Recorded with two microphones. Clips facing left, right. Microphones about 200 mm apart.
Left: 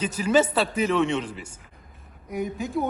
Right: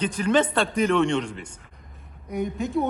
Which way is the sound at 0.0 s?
5° left (ahead or behind).